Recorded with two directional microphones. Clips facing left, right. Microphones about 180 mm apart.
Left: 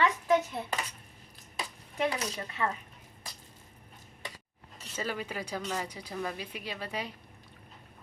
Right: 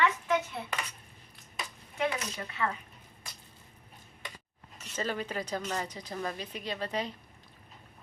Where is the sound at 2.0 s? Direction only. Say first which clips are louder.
Left 1 dB; 35° left (ahead or behind).